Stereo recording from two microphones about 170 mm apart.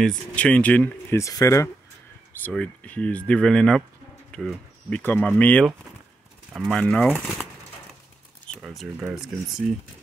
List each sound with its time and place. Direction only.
0.0 s speech: 5° left (ahead or behind)
1.2 s speech: 20° left (ahead or behind)
8.5 s a sound: 5° left (ahead or behind)
9.0 s speech: 5° right (ahead or behind)